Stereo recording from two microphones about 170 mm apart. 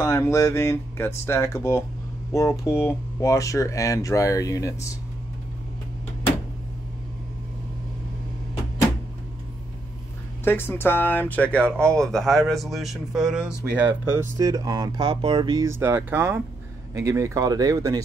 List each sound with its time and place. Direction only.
0.0 s speech: 15° left (ahead or behind)
10.4 s speech: 15° left (ahead or behind); by 13.5 s 5° right (ahead or behind)
14.4 s speech: 20° right (ahead or behind)